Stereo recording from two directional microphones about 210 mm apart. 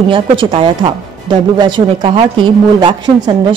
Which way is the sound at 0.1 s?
25° right (ahead or behind).